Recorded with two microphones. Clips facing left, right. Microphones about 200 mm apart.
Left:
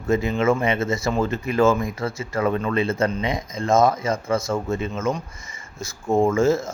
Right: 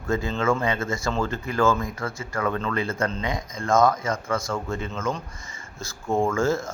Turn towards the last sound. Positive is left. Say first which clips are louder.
# left 4 dB
turn(degrees=20)  # may be behind; listen again after turning